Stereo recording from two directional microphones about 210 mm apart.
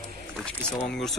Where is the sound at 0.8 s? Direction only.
Centre (ahead or behind).